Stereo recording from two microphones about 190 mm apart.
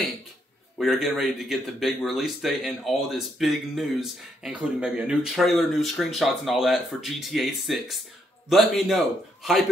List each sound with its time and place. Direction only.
0.7 s speech: centre (ahead or behind)